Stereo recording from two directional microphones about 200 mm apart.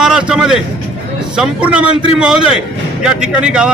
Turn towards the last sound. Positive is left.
turn(degrees=-5)  # may be behind; listen again after turning